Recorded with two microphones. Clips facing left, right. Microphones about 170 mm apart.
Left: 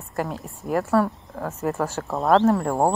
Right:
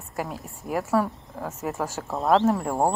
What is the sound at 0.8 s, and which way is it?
Speech, 15° right (ahead or behind).